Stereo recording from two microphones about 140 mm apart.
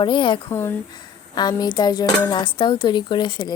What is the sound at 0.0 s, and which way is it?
Speech, 35° left (ahead or behind).